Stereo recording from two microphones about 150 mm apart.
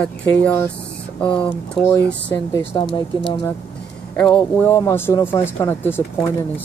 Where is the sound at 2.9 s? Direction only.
30° left (ahead or behind).